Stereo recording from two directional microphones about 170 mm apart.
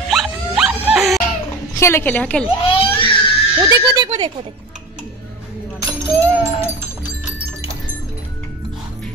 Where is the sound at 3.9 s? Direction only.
30° right (ahead or behind).